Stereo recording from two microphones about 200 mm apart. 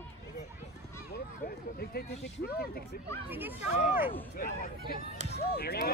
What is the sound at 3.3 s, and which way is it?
Speech, 10° right (ahead or behind).